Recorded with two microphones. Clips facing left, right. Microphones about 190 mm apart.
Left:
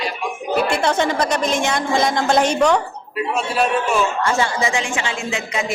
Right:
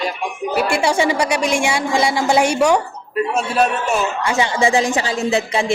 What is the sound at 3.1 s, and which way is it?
Speech, 45° right (ahead or behind).